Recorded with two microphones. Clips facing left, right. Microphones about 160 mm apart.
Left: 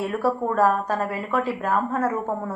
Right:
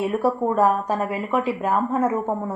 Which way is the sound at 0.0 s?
15° right (ahead or behind).